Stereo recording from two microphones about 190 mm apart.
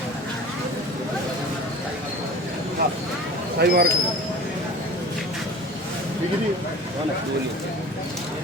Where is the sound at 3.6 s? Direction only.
55° right (ahead or behind).